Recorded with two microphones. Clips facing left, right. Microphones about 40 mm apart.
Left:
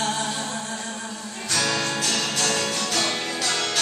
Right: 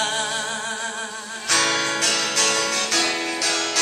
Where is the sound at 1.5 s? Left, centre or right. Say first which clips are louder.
Right 3 dB; right.